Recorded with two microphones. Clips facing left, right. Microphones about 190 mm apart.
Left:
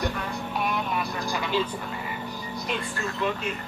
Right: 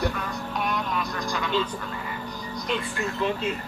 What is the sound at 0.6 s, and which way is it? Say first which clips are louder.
Vehicle: even; 5° left (ahead or behind).